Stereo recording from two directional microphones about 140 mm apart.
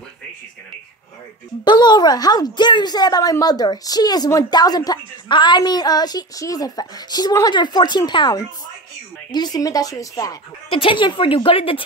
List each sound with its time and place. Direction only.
1.6 s a woman's voice: 30° left (ahead or behind)
10.7 s a woman's voice: 40° left (ahead or behind)